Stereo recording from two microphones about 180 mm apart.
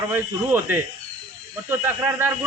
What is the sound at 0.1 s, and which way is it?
Speech, 10° right (ahead or behind).